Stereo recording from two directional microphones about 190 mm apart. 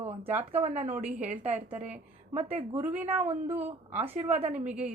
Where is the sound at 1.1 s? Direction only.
35° right (ahead or behind).